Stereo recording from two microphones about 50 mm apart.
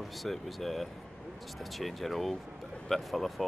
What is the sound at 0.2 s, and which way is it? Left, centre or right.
Speech, centre.